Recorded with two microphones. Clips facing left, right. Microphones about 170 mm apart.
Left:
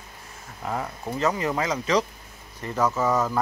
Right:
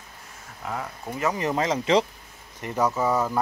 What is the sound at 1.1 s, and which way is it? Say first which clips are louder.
Speech: even; 20° right (ahead or behind).